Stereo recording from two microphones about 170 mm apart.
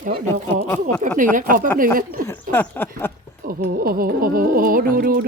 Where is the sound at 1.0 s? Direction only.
50° right (ahead or behind).